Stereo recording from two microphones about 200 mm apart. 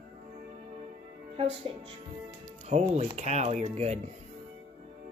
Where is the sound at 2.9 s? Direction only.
35° right (ahead or behind).